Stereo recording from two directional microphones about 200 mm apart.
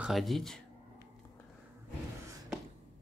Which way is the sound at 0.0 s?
Centre (ahead or behind).